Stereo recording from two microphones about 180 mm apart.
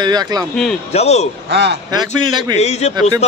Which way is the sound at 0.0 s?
20° right (ahead or behind).